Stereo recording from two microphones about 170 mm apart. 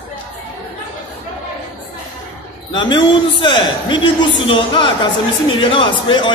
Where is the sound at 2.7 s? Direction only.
25° left (ahead or behind).